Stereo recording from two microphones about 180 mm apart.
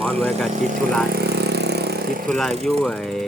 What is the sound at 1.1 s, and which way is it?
Vehicle, 65° right (ahead or behind).